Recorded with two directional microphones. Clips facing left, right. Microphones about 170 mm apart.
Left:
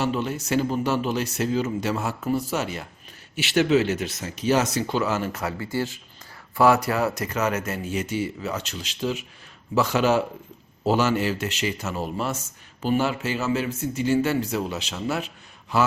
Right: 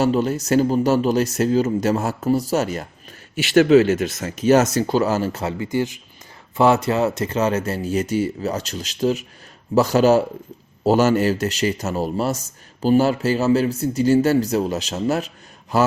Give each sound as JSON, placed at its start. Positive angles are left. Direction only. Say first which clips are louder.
{"t": 0.0, "sound": "a man's voice", "louder": "right 7 dB", "side_deg": -40}